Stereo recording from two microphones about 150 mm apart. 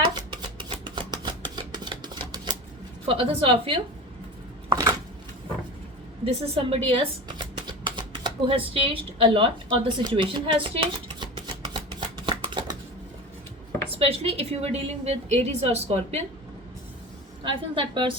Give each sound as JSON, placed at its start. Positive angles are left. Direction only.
{"t": 0.0, "sound": "shuffling cards", "side_deg": -30}
{"t": 0.9, "sound": "a sound", "side_deg": -30}
{"t": 3.1, "sound": "a woman's voice", "side_deg": -40}
{"t": 4.7, "sound": "chopping", "side_deg": -25}
{"t": 6.2, "sound": "typewriter", "side_deg": -40}
{"t": 14.0, "sound": "a woman's voice", "side_deg": -40}
{"t": 17.4, "sound": "a woman's voice", "side_deg": -35}